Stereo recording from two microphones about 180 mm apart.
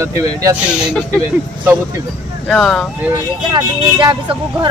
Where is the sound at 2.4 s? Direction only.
Centre (ahead or behind).